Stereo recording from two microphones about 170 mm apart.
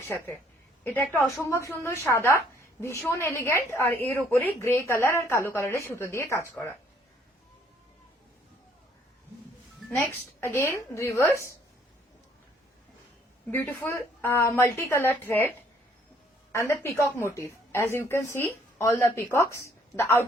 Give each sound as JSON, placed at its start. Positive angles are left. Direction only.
{"t": 0.9, "sound": "a woman's voice", "side_deg": 10}
{"t": 10.4, "sound": "a woman's voice", "side_deg": 15}
{"t": 13.5, "sound": "a woman's voice", "side_deg": 10}